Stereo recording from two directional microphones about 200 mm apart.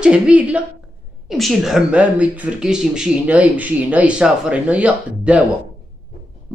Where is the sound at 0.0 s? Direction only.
5° right (ahead or behind).